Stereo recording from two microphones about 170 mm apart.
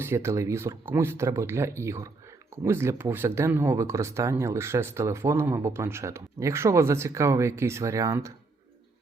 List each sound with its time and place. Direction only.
0.0 s speech: 15° right (ahead or behind)